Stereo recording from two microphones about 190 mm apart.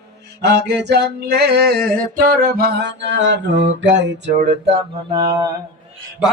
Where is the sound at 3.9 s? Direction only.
65° right (ahead or behind).